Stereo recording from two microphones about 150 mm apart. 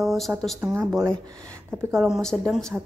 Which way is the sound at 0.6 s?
15° right (ahead or behind).